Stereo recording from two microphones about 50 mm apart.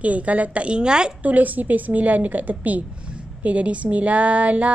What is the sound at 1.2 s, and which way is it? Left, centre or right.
A woman's voice, right.